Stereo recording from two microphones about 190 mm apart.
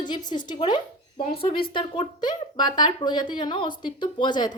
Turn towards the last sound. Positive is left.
turn(degrees=25)  # may be behind; listen again after turning